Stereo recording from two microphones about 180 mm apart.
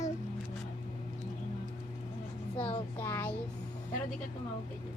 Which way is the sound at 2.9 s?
15° left (ahead or behind).